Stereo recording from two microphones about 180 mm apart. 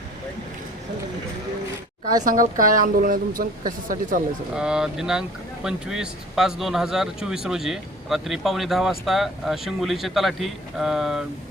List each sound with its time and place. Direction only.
2.2 s a woman's voice: 50° right (ahead or behind)
4.5 s speech: 5° right (ahead or behind)